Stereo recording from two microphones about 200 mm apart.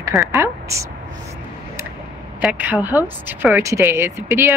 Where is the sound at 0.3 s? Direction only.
15° right (ahead or behind).